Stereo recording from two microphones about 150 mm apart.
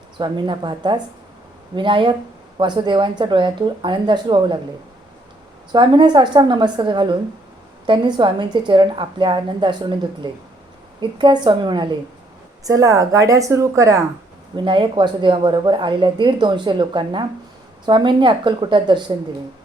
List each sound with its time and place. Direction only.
0.2 s a woman's voice: 30° right (ahead or behind)
5.7 s a woman's voice: 30° right (ahead or behind)
14.5 s speech: 35° right (ahead or behind)